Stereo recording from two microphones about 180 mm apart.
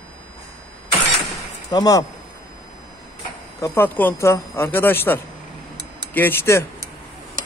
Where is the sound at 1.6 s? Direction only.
20° left (ahead or behind).